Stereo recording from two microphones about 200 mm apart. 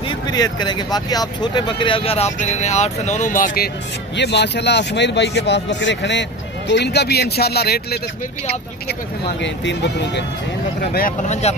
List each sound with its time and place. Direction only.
0.1 s speech: 20° left (ahead or behind); by 3.7 s 45° left (ahead or behind)
4.2 s speech: 60° left (ahead or behind)
9.4 s speech: 60° left (ahead or behind)
10.9 s speech: 45° left (ahead or behind)